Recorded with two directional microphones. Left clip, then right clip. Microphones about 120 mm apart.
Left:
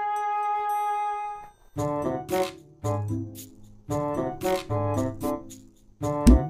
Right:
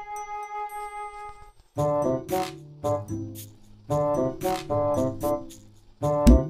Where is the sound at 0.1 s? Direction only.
Centre (ahead or behind).